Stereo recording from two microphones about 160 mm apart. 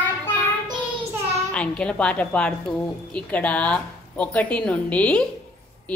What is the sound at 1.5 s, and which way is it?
A woman's voice, 5° left (ahead or behind).